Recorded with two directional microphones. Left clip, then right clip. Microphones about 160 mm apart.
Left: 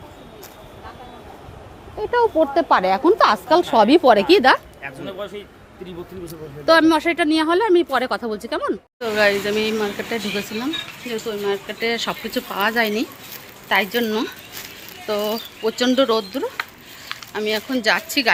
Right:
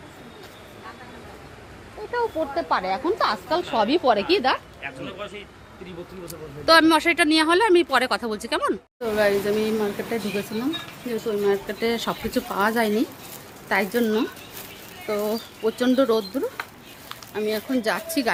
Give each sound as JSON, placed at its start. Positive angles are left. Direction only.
{"t": 2.1, "sound": "speech", "side_deg": 70}
{"t": 4.8, "sound": "speech", "side_deg": 90}
{"t": 6.2, "sound": "speech", "side_deg": 15}
{"t": 9.0, "sound": "speech", "side_deg": 0}
{"t": 11.3, "sound": "speech", "side_deg": -25}
{"t": 15.0, "sound": "speech", "side_deg": 5}